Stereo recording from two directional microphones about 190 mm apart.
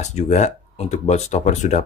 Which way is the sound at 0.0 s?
35° left (ahead or behind).